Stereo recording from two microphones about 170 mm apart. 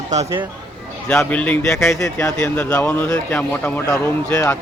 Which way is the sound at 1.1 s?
5° left (ahead or behind).